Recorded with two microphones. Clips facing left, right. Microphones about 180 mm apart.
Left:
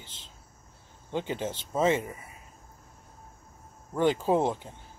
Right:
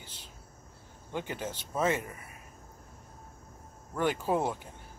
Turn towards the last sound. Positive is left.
turn(degrees=25)  # may be behind; listen again after turning